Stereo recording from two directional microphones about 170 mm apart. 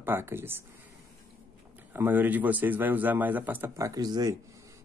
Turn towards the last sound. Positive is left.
turn(degrees=-20)  # may be behind; listen again after turning